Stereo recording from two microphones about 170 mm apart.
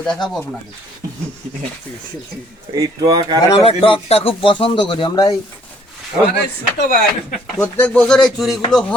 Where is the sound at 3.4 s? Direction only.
30° left (ahead or behind).